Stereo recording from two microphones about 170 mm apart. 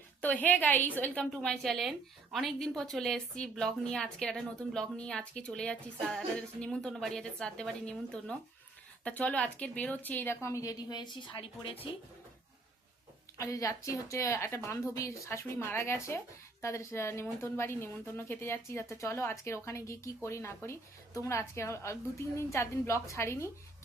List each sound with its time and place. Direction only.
0.2 s a woman's voice: 10° left (ahead or behind); by 11.8 s 30° left (ahead or behind)
13.4 s speech: 20° left (ahead or behind)